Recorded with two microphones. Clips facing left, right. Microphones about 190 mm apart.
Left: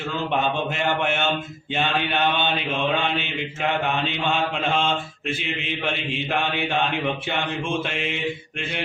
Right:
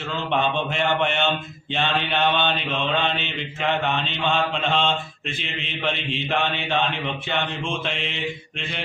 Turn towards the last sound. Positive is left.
turn(degrees=10)  # may be behind; listen again after turning